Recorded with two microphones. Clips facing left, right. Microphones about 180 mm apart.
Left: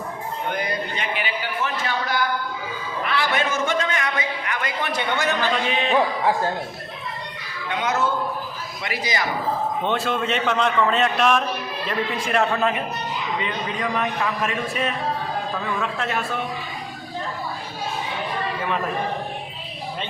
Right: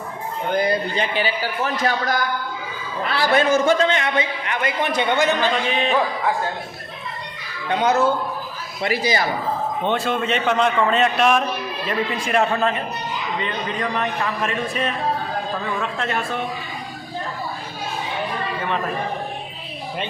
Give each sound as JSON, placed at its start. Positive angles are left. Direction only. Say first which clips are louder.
{"t": 0.5, "sound": "a man's voice", "louder": "right 10 dB", "side_deg": -35}
{"t": 3.1, "sound": "a man's voice", "louder": "right 6 dB", "side_deg": -35}
{"t": 5.6, "sound": "a man's voice", "louder": "right 1 dB", "side_deg": 0}
{"t": 7.7, "sound": "a man's voice", "louder": "right 5 dB", "side_deg": -35}
{"t": 9.8, "sound": "a man's voice", "louder": "right 4 dB", "side_deg": 0}